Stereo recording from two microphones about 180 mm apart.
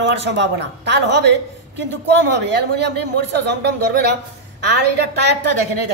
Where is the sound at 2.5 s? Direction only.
75° right (ahead or behind).